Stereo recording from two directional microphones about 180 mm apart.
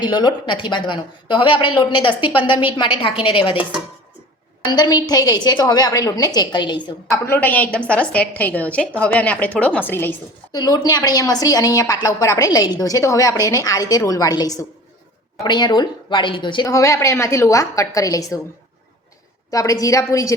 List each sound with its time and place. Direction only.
0.0 s a woman's voice: 25° left (ahead or behind)
4.6 s a woman's voice: 20° left (ahead or behind)
7.3 s a woman's voice: 10° left (ahead or behind)
10.6 s a woman's voice: 20° left (ahead or behind)
19.5 s a woman's voice: 20° left (ahead or behind)